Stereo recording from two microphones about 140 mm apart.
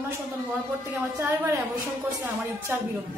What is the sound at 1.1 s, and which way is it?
Speech, 15° right (ahead or behind).